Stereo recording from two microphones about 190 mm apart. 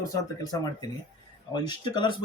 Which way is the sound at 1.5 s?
25° left (ahead or behind).